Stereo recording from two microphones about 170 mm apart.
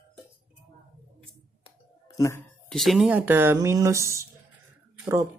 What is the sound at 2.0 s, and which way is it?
Music, 20° left (ahead or behind).